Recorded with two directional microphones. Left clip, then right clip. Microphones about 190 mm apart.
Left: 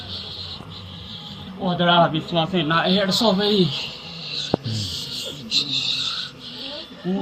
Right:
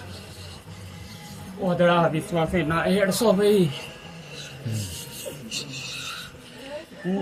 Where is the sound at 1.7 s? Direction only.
35° right (ahead or behind).